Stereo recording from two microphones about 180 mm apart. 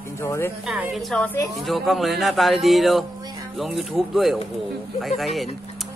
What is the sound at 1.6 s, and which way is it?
A woman's voice, centre (ahead or behind).